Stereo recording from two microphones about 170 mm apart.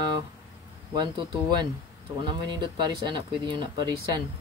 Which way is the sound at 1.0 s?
25° right (ahead or behind).